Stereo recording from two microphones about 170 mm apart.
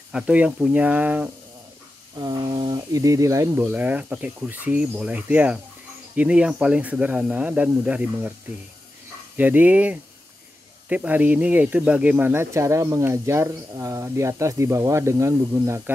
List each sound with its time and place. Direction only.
0.1 s speech: 5° right (ahead or behind)
2.1 s speech: 25° right (ahead or behind); by 8.3 s 10° right (ahead or behind)
9.4 s speech: 10° right (ahead or behind)